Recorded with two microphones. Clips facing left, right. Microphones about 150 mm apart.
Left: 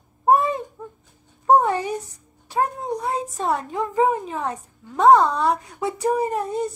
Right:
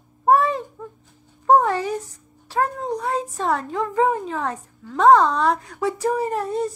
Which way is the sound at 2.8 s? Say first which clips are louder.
Right 1 dB; 10° left (ahead or behind).